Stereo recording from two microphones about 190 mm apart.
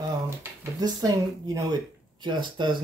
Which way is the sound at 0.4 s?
20° right (ahead or behind).